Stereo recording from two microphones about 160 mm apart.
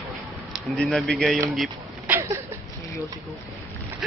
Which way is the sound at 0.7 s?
Centre (ahead or behind).